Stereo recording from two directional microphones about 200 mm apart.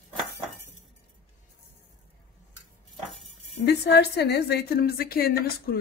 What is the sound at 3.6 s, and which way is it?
A woman's voice, 55° left (ahead or behind).